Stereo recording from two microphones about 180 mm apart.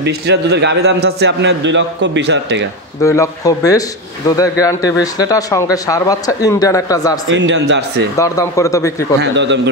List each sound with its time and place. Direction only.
0.0 s a man's voice: 70° right (ahead or behind)
3.0 s speech: 15° left (ahead or behind)
7.2 s a man's voice: 80° right
8.2 s speech: 15° left (ahead or behind)
9.2 s a man's voice: 80° right